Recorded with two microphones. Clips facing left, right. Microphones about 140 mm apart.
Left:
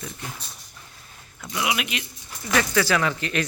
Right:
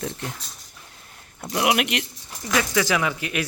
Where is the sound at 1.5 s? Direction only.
60° right (ahead or behind).